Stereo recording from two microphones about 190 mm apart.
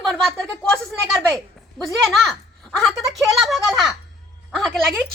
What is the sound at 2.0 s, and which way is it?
Speech, centre (ahead or behind).